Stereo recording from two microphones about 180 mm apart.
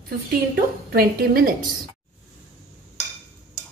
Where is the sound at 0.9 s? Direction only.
55° right (ahead or behind).